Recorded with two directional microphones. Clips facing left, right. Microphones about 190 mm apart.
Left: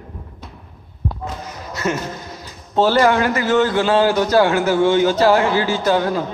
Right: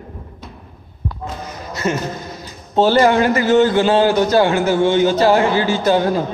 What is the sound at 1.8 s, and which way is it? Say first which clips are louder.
Speech: right 1 dB; 5° left (ahead or behind).